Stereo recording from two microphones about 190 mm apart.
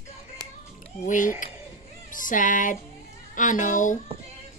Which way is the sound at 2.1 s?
45° left (ahead or behind).